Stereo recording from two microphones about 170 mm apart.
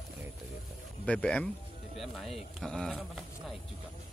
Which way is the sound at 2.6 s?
Centre (ahead or behind).